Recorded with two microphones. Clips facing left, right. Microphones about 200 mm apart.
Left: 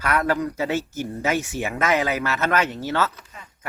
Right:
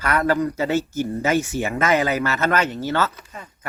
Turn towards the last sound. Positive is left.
turn(degrees=-10)  # may be behind; listen again after turning